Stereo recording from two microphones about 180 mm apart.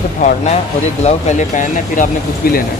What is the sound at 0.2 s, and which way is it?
Speech, 45° left (ahead or behind).